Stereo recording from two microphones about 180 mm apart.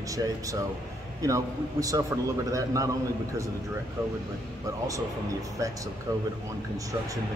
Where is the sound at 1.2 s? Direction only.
20° right (ahead or behind).